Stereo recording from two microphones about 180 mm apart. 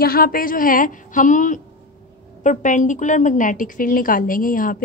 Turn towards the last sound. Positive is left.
turn(degrees=50)  # may be behind; listen again after turning